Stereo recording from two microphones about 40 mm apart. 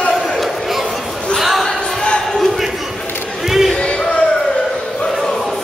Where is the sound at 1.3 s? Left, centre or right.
Centre.